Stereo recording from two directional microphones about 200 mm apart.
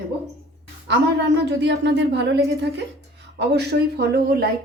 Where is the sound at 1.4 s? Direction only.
60° right (ahead or behind).